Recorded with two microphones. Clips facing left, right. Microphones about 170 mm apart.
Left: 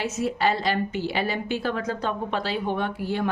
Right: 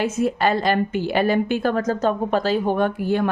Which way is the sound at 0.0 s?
50° right (ahead or behind).